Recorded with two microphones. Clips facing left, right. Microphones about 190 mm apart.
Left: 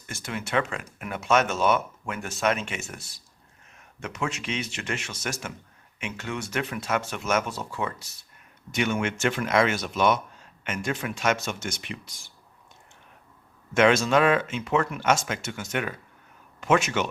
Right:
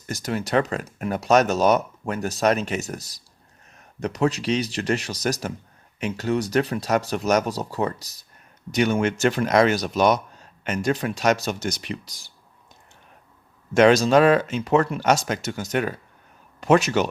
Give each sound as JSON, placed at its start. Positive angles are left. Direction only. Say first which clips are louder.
{"t": 0.0, "sound": "speech", "louder": "right 7 dB", "side_deg": -40}
{"t": 13.7, "sound": "speech", "louder": "right 5 dB", "side_deg": -35}